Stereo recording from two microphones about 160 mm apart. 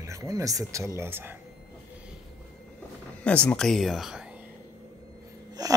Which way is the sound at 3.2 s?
5° left (ahead or behind).